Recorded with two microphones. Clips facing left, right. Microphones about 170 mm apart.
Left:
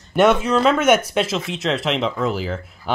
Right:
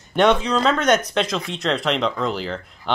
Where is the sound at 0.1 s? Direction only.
5° left (ahead or behind).